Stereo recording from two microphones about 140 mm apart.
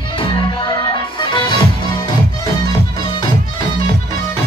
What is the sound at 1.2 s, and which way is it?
Music, 35° left (ahead or behind).